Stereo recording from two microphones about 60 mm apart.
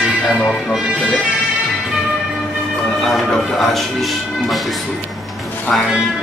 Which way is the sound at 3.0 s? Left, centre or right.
Centre.